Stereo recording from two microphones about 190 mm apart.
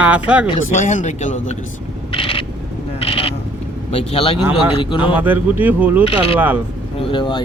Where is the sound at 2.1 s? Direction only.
30° left (ahead or behind).